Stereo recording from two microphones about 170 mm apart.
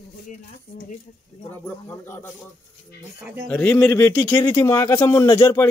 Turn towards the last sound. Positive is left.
turn(degrees=15)  # may be behind; listen again after turning